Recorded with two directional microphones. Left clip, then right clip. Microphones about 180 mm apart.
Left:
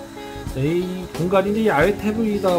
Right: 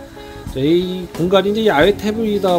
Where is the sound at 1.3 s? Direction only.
20° right (ahead or behind).